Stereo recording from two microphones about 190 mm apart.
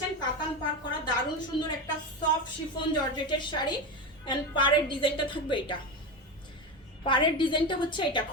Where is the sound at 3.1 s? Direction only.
25° left (ahead or behind).